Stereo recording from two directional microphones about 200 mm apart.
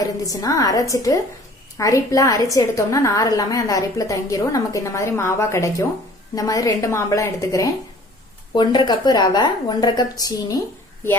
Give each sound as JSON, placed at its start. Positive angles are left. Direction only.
{"t": 0.0, "sound": "a woman's voice", "side_deg": 15}